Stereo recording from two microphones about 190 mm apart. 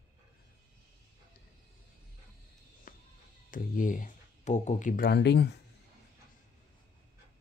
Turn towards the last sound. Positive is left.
turn(degrees=65)  # may be behind; listen again after turning